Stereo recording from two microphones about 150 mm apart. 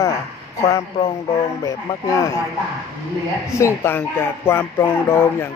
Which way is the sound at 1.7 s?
20° left (ahead or behind).